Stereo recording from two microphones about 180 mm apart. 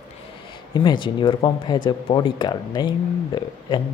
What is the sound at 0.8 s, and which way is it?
Speech, 25° left (ahead or behind).